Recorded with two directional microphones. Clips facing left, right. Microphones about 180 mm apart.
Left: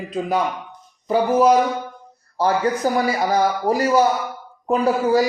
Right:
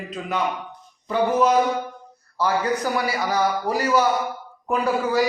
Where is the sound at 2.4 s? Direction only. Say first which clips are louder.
Left 3 dB; 40° left (ahead or behind).